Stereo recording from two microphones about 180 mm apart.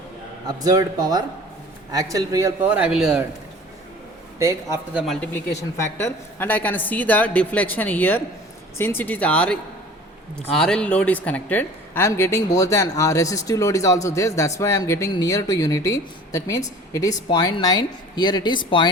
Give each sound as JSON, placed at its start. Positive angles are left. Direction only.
{"t": 0.4, "sound": "a man's voice", "side_deg": -20}
{"t": 2.6, "sound": "a man's voice", "side_deg": -5}
{"t": 4.4, "sound": "a man's voice", "side_deg": -15}
{"t": 5.0, "sound": "a woman's voice", "side_deg": 10}